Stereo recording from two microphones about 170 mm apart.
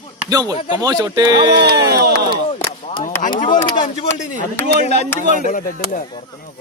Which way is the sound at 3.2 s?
50° left (ahead or behind).